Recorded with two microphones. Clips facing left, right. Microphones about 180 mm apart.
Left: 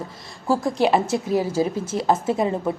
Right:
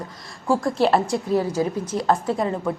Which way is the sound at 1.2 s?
5° left (ahead or behind).